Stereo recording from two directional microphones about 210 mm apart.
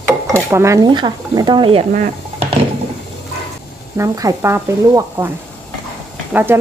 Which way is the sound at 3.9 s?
15° right (ahead or behind).